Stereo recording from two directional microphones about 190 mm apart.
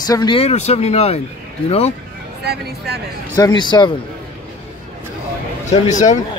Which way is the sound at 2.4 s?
60° right (ahead or behind).